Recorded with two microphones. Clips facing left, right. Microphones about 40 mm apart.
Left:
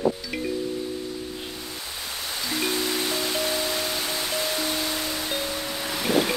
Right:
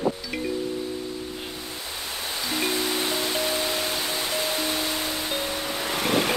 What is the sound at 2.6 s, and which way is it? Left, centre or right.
Music, right.